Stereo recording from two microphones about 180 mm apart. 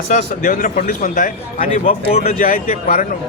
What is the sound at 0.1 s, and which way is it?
A man's voice, 50° left (ahead or behind).